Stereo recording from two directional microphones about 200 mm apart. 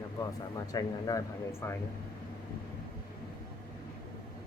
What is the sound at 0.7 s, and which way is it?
Speech, 20° left (ahead or behind).